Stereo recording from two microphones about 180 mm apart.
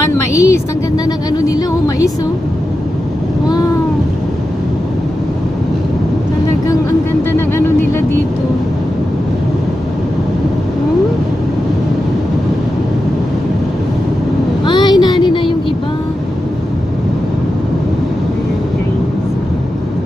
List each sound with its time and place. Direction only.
0.3 s a woman's voice: 15° left (ahead or behind)
7.3 s music: 10° left (ahead or behind)
14.7 s a sound: 25° left (ahead or behind)